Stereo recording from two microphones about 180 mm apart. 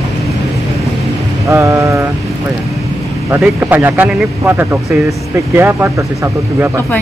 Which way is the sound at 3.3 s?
10° right (ahead or behind).